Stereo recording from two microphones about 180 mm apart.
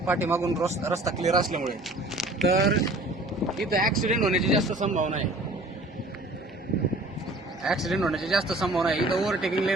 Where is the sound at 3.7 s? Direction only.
50° right (ahead or behind).